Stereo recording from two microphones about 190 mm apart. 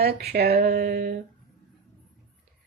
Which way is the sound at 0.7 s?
50° right (ahead or behind).